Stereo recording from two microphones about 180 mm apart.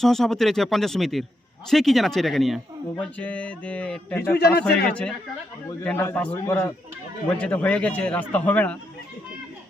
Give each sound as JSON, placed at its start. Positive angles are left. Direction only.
{"t": 0.0, "sound": "speech", "side_deg": 0}
{"t": 4.4, "sound": "speech", "side_deg": 60}
{"t": 4.9, "sound": "speech", "side_deg": 5}